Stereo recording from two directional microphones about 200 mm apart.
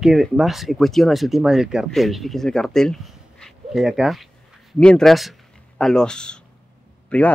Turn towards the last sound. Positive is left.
turn(degrees=5)  # may be behind; listen again after turning